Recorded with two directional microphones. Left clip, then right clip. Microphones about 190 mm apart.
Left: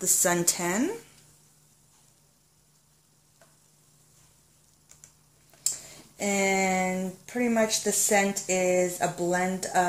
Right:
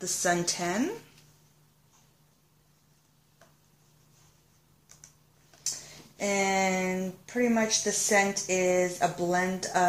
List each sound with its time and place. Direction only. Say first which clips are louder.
0.0 s speech: left 2 dB; 45° left (ahead or behind)
5.7 s speech: left 1 dB; 40° left (ahead or behind)